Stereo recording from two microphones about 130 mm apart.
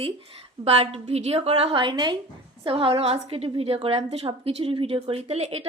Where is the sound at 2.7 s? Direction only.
45° right (ahead or behind).